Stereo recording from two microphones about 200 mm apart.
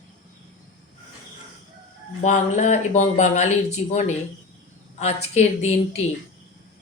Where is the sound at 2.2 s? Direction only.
35° left (ahead or behind).